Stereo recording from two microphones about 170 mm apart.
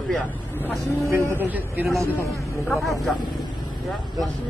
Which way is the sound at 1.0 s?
15° right (ahead or behind).